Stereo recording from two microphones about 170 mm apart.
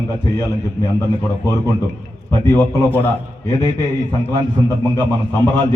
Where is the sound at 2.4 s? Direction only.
15° left (ahead or behind).